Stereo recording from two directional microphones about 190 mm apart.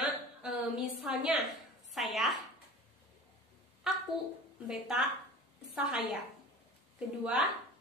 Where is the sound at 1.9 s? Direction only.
Centre (ahead or behind).